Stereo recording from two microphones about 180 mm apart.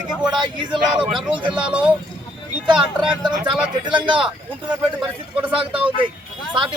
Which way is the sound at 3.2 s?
25° right (ahead or behind).